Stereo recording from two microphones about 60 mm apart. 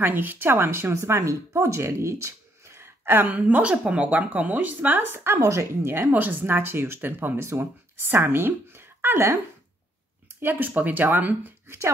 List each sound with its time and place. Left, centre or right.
0.0 s speech: right
3.3 s speech: right
5.4 s speech: right
5.8 s speech: right
10.4 s speech: right